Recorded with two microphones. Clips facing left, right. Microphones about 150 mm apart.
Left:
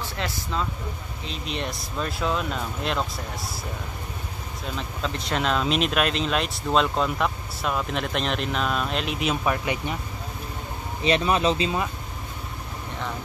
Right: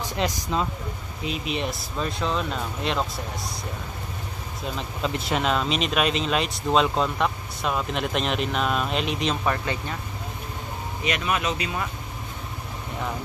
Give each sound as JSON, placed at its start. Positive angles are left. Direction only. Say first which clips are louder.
{"t": 0.0, "sound": "speech", "louder": "right 4 dB", "side_deg": -15}
{"t": 1.2, "sound": "speech", "louder": "right 3 dB", "side_deg": -5}
{"t": 4.7, "sound": "speech", "louder": "right 2 dB", "side_deg": -5}
{"t": 11.1, "sound": "speech", "louder": "left 5 dB", "side_deg": 30}